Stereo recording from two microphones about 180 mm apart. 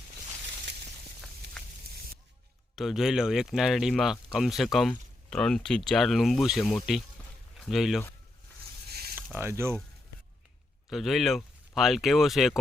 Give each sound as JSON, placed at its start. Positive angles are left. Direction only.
{"t": 2.7, "sound": "speech", "side_deg": 0}
{"t": 8.9, "sound": "a sound", "side_deg": -60}
{"t": 9.1, "sound": "speech", "side_deg": -15}
{"t": 10.8, "sound": "speech", "side_deg": 0}